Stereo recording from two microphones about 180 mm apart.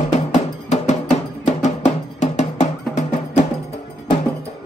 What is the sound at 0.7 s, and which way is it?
Music, 40° left (ahead or behind).